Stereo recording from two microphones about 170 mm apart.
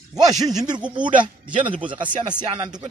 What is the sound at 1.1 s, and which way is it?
A man's voice, 30° right (ahead or behind).